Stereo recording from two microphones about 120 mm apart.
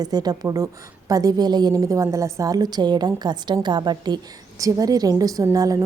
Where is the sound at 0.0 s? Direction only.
30° right (ahead or behind).